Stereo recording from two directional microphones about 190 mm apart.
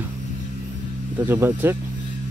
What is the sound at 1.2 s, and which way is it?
Speech, 10° right (ahead or behind).